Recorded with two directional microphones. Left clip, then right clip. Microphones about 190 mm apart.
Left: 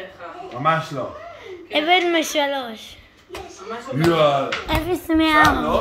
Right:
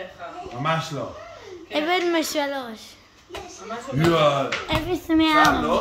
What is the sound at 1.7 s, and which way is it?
A woman's voice, 5° right (ahead or behind).